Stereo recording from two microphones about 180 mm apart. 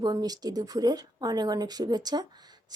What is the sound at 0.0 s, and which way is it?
A woman's voice, 20° right (ahead or behind).